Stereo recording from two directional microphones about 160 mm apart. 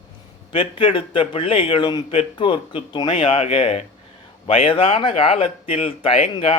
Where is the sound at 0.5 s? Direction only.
35° left (ahead or behind).